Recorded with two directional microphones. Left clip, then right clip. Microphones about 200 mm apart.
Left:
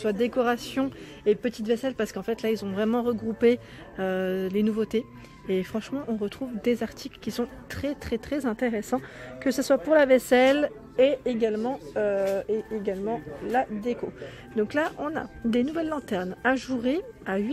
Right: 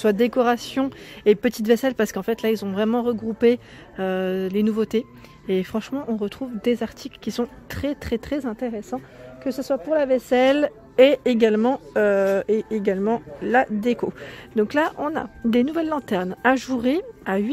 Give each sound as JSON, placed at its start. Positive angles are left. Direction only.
{"t": 0.0, "sound": "speech", "side_deg": -30}
{"t": 1.2, "sound": "speech", "side_deg": -35}
{"t": 8.5, "sound": "speech", "side_deg": 0}
{"t": 10.3, "sound": "speech", "side_deg": -15}
{"t": 11.0, "sound": "a woman's voice", "side_deg": -35}
{"t": 14.2, "sound": "speech", "side_deg": -25}